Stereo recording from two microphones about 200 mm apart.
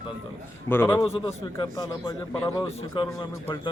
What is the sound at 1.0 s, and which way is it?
A man's voice, 25° left (ahead or behind).